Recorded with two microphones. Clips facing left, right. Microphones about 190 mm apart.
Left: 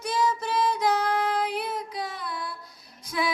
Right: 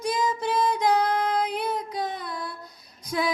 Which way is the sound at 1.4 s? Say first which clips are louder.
Right 2 dB; 40° right (ahead or behind).